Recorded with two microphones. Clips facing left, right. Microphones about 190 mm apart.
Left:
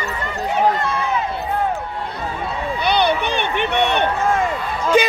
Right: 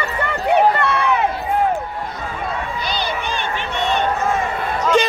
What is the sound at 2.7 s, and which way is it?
Run, 60° left (ahead or behind).